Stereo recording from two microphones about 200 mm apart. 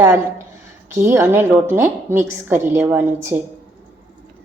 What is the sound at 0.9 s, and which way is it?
A woman's voice, 15° right (ahead or behind).